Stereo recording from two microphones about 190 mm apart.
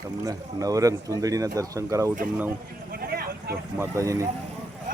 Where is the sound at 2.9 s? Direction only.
50° right (ahead or behind).